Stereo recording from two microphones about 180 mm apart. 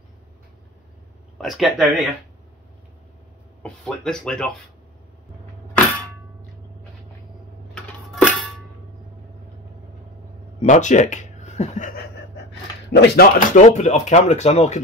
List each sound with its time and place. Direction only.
1.4 s speech: centre (ahead or behind)
3.6 s speech: 5° left (ahead or behind)
7.7 s music: centre (ahead or behind)
10.6 s speech: 40° left (ahead or behind)
12.4 s a sound: 70° left (ahead or behind)
13.6 s speech: 40° left (ahead or behind)